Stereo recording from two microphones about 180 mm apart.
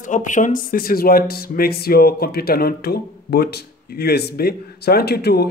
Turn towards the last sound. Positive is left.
turn(degrees=65)  # may be behind; listen again after turning